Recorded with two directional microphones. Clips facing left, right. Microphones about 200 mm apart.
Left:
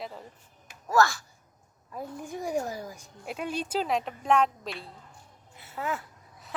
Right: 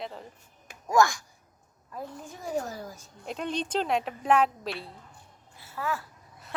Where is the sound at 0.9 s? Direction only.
15° right (ahead or behind).